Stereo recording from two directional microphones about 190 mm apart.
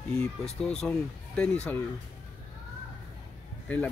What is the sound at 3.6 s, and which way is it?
Speech, 10° left (ahead or behind).